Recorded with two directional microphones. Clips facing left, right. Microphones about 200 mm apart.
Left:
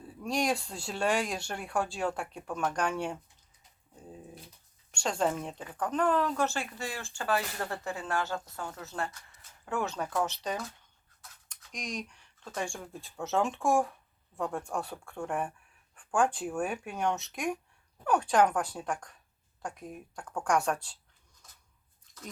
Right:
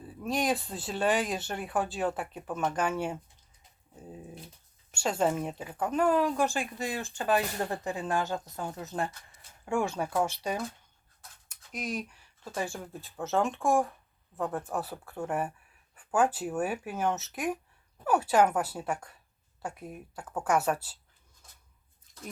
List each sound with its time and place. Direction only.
0.0 s speech: centre (ahead or behind)
4.9 s speech: 5° right (ahead or behind)
11.4 s a sound: 5° right (ahead or behind)
12.5 s speech: 5° right (ahead or behind)